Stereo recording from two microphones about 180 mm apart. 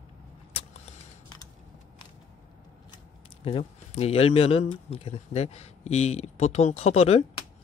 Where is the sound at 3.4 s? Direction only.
35° left (ahead or behind).